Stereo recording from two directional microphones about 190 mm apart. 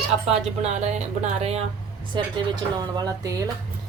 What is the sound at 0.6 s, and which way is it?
Speech, 35° right (ahead or behind).